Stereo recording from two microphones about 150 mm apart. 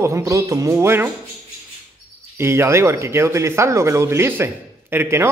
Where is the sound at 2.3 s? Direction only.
15° right (ahead or behind).